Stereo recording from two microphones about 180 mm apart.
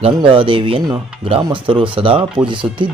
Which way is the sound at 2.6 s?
10° right (ahead or behind).